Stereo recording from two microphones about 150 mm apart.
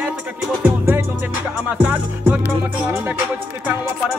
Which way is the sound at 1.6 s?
10° right (ahead or behind).